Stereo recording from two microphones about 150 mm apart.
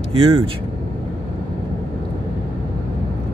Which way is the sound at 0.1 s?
40° right (ahead or behind).